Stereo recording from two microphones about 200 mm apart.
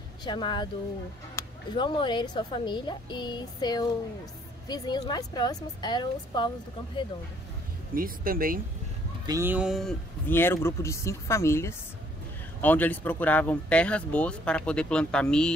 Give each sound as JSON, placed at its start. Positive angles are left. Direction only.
{"t": 0.2, "sound": "a woman's voice", "side_deg": 20}
{"t": 7.9, "sound": "speech", "side_deg": -45}
{"t": 9.2, "sound": "speech", "side_deg": -15}